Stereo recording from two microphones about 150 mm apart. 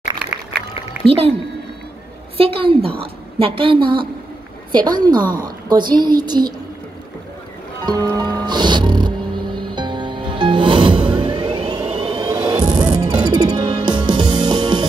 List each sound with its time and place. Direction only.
1.0 s a woman's voice: 40° right (ahead or behind)
2.3 s a woman's voice: 40° right (ahead or behind)
7.8 s music: 30° right (ahead or behind)